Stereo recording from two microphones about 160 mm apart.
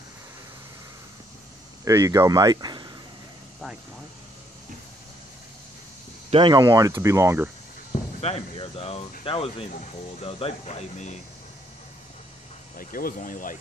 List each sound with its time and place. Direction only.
1.9 s speech: 20° right (ahead or behind)
6.3 s speech: 30° right (ahead or behind)
6.6 s speech: 20° right (ahead or behind)
7.9 s speech: 40° left (ahead or behind)
12.7 s speech: 60° left (ahead or behind)